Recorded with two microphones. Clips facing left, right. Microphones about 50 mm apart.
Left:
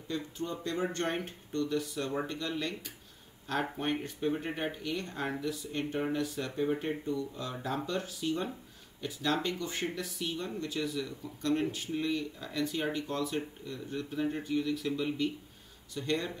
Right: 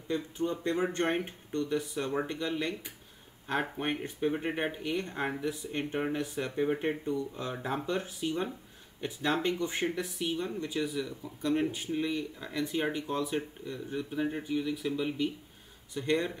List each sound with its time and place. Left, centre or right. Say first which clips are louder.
0.1 s speech: right 4 dB; right